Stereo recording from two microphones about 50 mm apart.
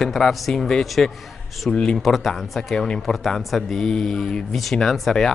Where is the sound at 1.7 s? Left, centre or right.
Centre.